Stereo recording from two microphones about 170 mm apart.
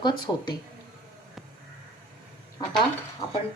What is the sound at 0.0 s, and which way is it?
Speech, 25° left (ahead or behind).